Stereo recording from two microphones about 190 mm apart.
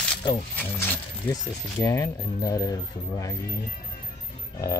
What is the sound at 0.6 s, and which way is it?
Speech, 10° left (ahead or behind).